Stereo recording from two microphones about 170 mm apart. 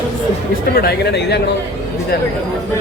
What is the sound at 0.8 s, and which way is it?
Speech, 75° left (ahead or behind).